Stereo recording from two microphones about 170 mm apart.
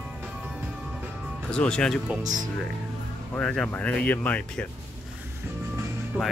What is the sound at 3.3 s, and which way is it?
Speech, 5° left (ahead or behind).